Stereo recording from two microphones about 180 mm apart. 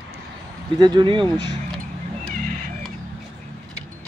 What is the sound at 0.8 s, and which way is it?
Speech, 25° right (ahead or behind).